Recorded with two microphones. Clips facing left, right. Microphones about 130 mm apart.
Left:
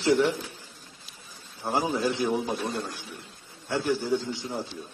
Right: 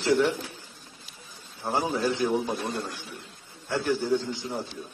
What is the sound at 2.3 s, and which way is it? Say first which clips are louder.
A man's voice: even; centre (ahead or behind).